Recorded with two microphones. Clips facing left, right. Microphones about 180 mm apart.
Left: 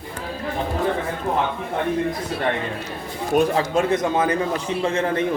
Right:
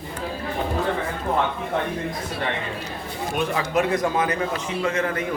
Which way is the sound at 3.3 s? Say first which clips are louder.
Left 5 dB; 35° left (ahead or behind).